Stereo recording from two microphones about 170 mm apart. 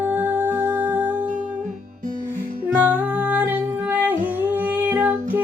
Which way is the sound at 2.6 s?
10° right (ahead or behind).